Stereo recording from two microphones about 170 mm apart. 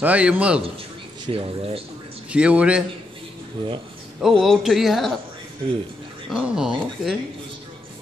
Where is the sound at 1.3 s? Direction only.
35° right (ahead or behind).